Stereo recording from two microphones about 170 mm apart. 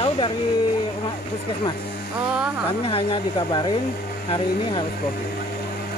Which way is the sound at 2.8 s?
35° left (ahead or behind).